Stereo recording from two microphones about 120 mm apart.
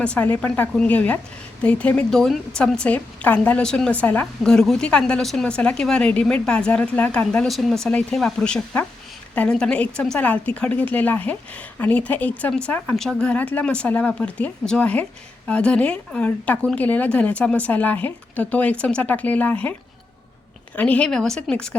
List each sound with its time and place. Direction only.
0.0 s a woman's voice: 10° left (ahead or behind)
20.7 s a woman's voice: 10° left (ahead or behind)